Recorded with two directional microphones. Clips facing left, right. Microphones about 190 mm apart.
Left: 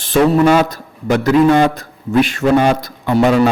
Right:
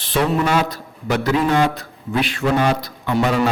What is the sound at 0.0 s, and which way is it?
A man's voice, 45° left (ahead or behind).